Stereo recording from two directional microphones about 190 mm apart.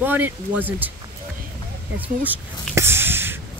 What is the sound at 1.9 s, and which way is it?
Speech, 10° right (ahead or behind).